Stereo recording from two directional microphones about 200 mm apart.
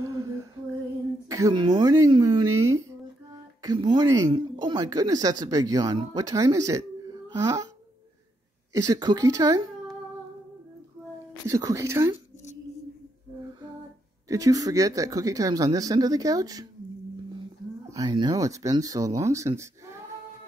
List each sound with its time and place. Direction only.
1.3 s speech: 20° right (ahead or behind)
8.7 s speech: 15° right (ahead or behind)
11.4 s speech: 15° right (ahead or behind)
14.3 s speech: 15° right (ahead or behind)
17.8 s speech: 20° right (ahead or behind)